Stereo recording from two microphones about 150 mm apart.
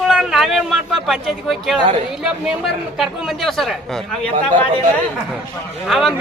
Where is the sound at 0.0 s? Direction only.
5° right (ahead or behind).